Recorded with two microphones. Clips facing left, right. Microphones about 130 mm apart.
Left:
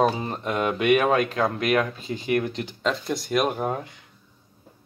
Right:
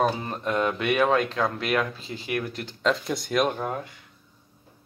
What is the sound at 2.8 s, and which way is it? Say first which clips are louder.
Speech: right 2 dB; centre (ahead or behind).